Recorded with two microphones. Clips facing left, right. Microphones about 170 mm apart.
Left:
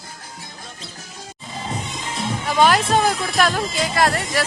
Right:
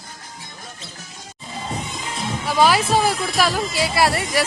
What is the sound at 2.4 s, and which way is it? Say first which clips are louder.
Speech: even; 5° right (ahead or behind).